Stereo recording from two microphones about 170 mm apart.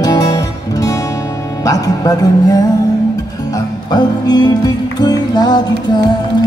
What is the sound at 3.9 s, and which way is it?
Music, 25° left (ahead or behind).